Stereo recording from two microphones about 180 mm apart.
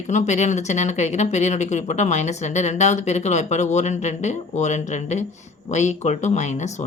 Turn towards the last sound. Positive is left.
turn(degrees=40)  # may be behind; listen again after turning